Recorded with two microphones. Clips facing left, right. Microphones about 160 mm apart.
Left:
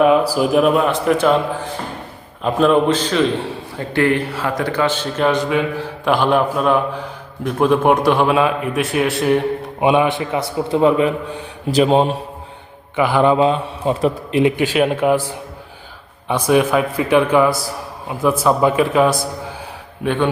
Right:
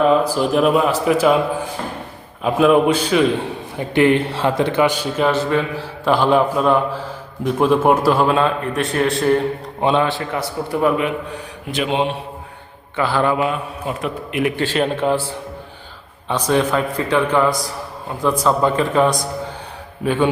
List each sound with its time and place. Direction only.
0.0 s a man's voice: 5° left (ahead or behind)
5.4 s a man's voice: 15° left (ahead or behind)
9.8 s a man's voice: 15° left (ahead or behind)
11.7 s a man's voice: 40° left (ahead or behind)
13.0 s a man's voice: 20° left (ahead or behind)
14.5 s a man's voice: 10° left (ahead or behind)
20.1 s a man's voice: 10° right (ahead or behind)